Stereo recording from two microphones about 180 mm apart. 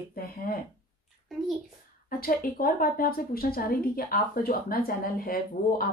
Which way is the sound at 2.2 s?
55° left (ahead or behind).